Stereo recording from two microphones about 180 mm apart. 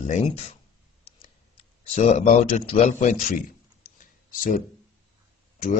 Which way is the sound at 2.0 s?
35° left (ahead or behind).